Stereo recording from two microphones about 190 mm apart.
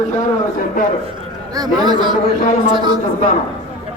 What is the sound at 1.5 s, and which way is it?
A man's voice, 20° right (ahead or behind).